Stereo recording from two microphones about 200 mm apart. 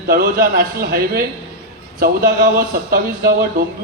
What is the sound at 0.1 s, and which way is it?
Speech, 45° right (ahead or behind).